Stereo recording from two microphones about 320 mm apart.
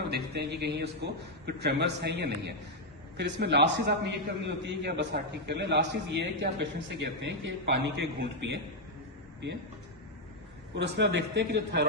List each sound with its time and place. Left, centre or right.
0.1 s a man's voice: right
10.8 s a man's voice: right